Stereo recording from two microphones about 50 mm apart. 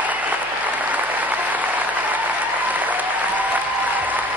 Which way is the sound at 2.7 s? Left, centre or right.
Right.